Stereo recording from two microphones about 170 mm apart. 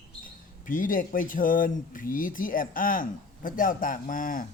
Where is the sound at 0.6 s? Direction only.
50° left (ahead or behind).